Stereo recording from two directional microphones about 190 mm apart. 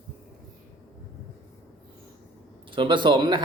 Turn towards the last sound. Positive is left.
turn(degrees=-25)  # may be behind; listen again after turning